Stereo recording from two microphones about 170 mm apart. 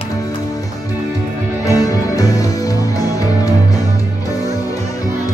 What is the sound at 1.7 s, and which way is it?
Music, 20° left (ahead or behind).